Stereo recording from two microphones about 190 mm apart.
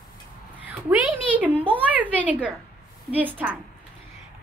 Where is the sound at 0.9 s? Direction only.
5° right (ahead or behind).